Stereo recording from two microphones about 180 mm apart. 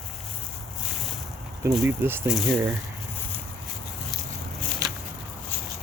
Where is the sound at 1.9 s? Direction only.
10° right (ahead or behind).